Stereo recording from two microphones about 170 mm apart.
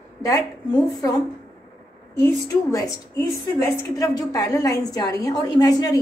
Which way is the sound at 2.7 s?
20° left (ahead or behind).